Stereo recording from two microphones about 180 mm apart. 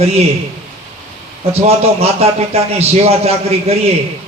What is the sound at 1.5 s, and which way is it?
A man's voice, 35° right (ahead or behind).